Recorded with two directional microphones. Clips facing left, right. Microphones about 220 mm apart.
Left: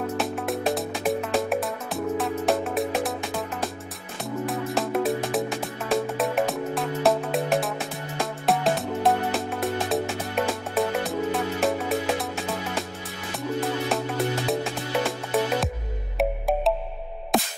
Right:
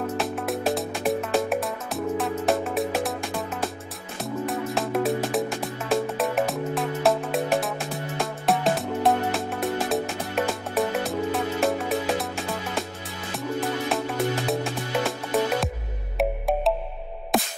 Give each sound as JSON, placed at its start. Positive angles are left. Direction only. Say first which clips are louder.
{"t": 0.0, "sound": "music", "louder": "even", "side_deg": 0}
{"t": 13.6, "sound": "music", "louder": "even", "side_deg": 0}